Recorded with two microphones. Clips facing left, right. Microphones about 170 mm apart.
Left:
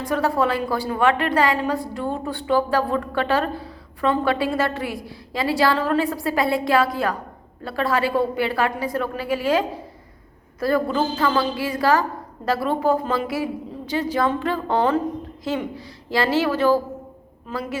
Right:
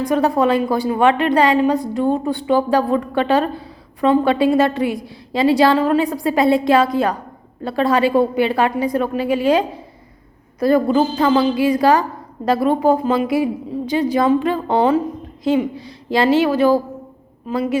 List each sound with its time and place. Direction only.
0.1 s a woman's voice: 20° right (ahead or behind)